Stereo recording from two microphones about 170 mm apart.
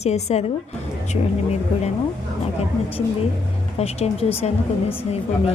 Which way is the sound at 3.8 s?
35° left (ahead or behind).